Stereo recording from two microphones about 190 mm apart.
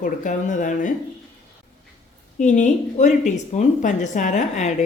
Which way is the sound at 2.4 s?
40° left (ahead or behind).